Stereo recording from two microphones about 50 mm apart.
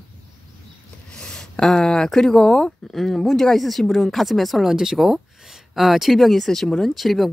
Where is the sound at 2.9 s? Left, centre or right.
Centre.